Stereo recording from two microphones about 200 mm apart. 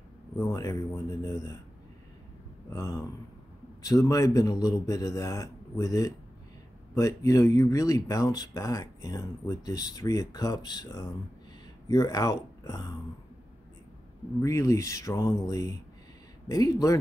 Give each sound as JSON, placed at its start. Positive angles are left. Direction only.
{"t": 0.4, "sound": "speech", "side_deg": 15}
{"t": 2.7, "sound": "speech", "side_deg": 15}
{"t": 14.4, "sound": "speech", "side_deg": 15}